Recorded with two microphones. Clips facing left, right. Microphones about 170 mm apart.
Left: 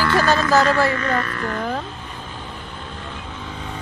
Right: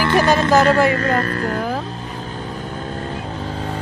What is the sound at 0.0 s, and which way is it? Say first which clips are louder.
Speech: right 3 dB; 20° right (ahead or behind).